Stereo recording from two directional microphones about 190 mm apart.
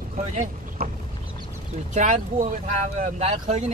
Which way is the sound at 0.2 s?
40° right (ahead or behind).